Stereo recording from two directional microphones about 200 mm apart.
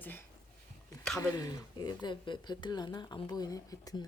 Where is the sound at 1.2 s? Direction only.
15° left (ahead or behind).